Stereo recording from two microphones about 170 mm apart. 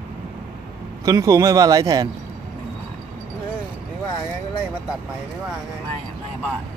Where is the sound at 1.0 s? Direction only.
20° right (ahead or behind).